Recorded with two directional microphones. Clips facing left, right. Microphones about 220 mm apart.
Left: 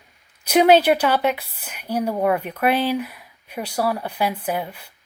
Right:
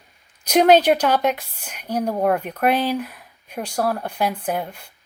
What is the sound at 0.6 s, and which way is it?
Speech, 5° left (ahead or behind).